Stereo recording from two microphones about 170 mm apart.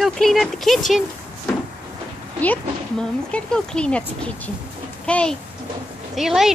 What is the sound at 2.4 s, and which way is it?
Speech, 10° left (ahead or behind).